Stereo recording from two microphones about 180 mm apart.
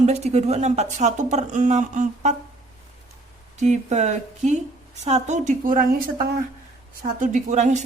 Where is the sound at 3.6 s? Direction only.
40° right (ahead or behind).